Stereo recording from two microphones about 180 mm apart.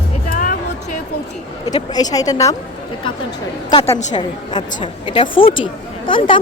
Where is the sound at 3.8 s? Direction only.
25° left (ahead or behind).